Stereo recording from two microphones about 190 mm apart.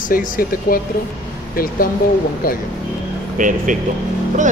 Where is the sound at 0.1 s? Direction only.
50° left (ahead or behind).